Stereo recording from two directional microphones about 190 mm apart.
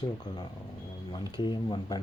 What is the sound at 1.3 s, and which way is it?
Speech, 25° left (ahead or behind).